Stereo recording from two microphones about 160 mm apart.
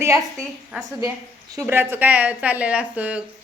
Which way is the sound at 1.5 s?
15° right (ahead or behind).